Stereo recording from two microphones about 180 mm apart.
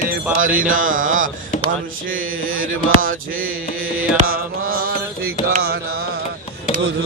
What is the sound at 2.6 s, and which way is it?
Music, 90° right.